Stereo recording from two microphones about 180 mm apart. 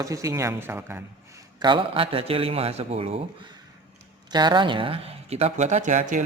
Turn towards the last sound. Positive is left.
turn(degrees=-45)  # may be behind; listen again after turning